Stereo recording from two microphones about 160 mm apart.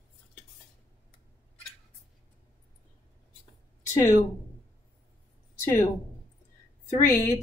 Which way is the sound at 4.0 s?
15° left (ahead or behind).